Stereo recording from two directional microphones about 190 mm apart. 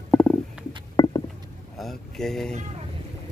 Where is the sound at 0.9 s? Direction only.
20° left (ahead or behind).